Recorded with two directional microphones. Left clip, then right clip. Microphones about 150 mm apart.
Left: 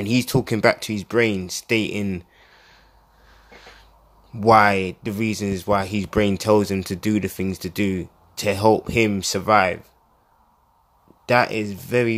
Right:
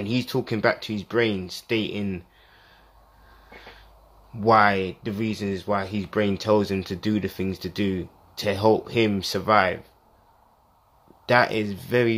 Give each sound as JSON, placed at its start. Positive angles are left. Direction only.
{"t": 0.0, "sound": "speech", "side_deg": 35}
{"t": 4.4, "sound": "speech", "side_deg": 30}
{"t": 11.2, "sound": "speech", "side_deg": 15}